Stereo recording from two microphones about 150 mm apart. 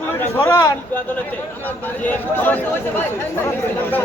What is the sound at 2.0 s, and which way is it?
Speech, 10° left (ahead or behind).